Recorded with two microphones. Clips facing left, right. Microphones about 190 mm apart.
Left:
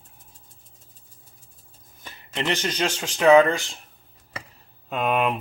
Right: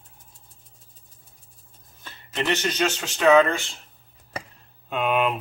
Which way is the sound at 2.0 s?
15° left (ahead or behind).